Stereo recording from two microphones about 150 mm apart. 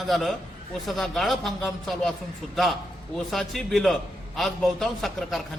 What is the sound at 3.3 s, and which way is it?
A man's voice, centre (ahead or behind).